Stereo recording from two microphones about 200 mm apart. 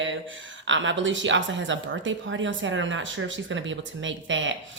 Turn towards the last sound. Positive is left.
turn(degrees=-70)  # may be behind; listen again after turning